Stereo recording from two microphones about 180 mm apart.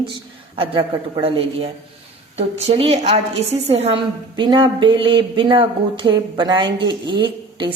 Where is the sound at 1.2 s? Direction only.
30° right (ahead or behind).